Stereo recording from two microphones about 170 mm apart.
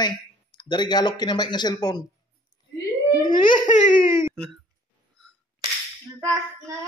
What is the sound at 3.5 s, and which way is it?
Baby cry, 45° left (ahead or behind).